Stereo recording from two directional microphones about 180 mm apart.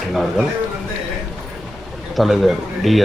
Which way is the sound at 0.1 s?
Centre (ahead or behind).